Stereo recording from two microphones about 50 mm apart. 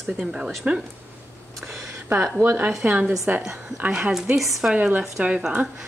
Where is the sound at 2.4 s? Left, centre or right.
Right.